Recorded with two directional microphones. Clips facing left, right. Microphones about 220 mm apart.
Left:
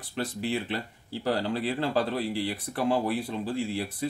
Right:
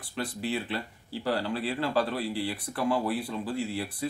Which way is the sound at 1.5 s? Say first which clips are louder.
Left 2 dB; 25° left (ahead or behind).